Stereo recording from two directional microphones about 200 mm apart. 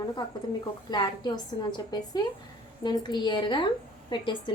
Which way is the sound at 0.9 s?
20° left (ahead or behind).